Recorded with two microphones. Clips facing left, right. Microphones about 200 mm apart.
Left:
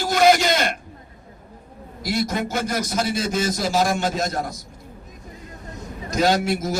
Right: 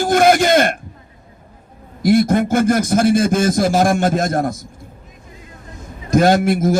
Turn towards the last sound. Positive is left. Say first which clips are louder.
# right 7 dB
turn(degrees=-50)  # may be behind; listen again after turning